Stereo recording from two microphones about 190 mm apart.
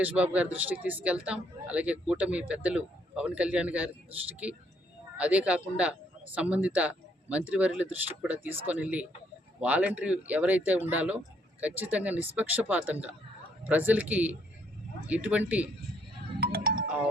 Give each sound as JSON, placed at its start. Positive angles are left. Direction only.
{"t": 0.0, "sound": "speech", "side_deg": -5}
{"t": 16.4, "sound": "music", "side_deg": -55}